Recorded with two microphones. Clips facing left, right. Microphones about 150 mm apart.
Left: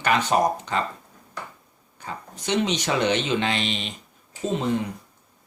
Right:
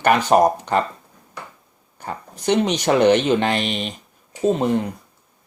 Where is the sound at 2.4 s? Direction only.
55° right (ahead or behind).